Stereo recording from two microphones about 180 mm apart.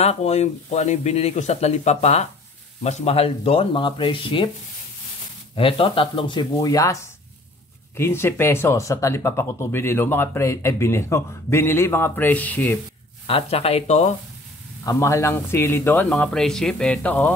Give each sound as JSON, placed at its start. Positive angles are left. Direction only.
{"t": 0.0, "sound": "speech", "side_deg": 35}
{"t": 5.6, "sound": "speech", "side_deg": 30}
{"t": 13.3, "sound": "speech", "side_deg": 35}
{"t": 14.9, "sound": "speech", "side_deg": 15}